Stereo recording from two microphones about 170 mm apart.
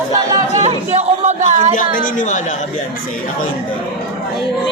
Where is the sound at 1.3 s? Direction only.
45° right (ahead or behind).